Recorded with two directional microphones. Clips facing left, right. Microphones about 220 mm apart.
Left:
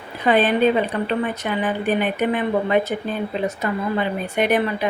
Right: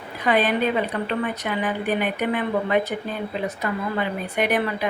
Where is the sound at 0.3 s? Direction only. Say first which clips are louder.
Left 4 dB; 30° left (ahead or behind).